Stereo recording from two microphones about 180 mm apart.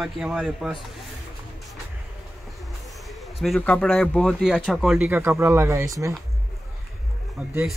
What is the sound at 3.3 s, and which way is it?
Speech, centre (ahead or behind).